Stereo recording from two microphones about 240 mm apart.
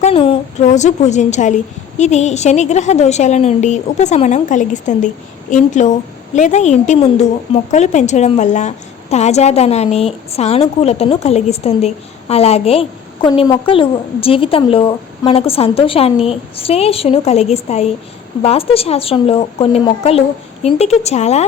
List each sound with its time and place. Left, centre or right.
0.0 s a woman's voice: left